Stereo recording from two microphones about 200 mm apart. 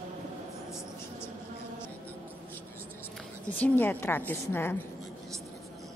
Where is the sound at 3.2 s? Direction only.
10° left (ahead or behind).